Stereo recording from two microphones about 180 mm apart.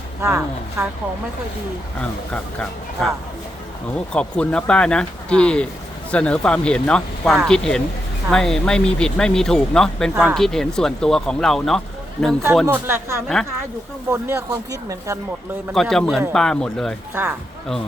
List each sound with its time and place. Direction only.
0.2 s speech: 15° right (ahead or behind)
2.0 s speech: 5° left (ahead or behind)
12.6 s speech: 15° right (ahead or behind)
13.2 s speech: centre (ahead or behind)
14.1 s speech: 15° right (ahead or behind)
15.7 s speech: centre (ahead or behind)